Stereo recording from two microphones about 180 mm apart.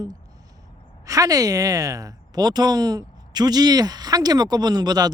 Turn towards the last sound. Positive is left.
turn(degrees=-20)  # may be behind; listen again after turning